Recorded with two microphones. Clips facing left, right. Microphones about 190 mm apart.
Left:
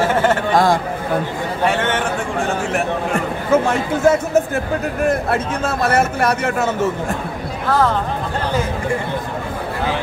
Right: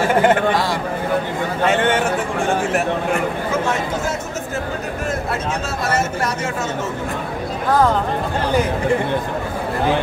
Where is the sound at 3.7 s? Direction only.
55° left (ahead or behind).